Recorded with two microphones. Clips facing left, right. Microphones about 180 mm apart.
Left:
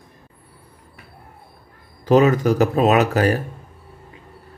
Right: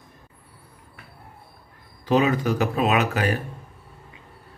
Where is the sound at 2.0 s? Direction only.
45° left (ahead or behind).